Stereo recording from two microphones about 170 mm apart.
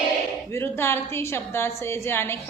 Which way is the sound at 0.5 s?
15° left (ahead or behind).